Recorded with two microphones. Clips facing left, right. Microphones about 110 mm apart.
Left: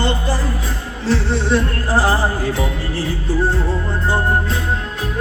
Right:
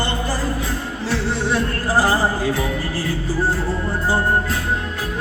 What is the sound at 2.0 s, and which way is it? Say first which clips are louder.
Speech: even; 15° left (ahead or behind).